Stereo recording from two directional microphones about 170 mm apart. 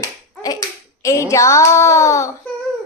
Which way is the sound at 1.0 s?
20° left (ahead or behind).